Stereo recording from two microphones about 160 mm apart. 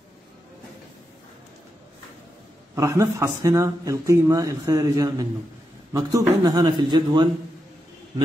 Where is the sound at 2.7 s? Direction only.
20° right (ahead or behind).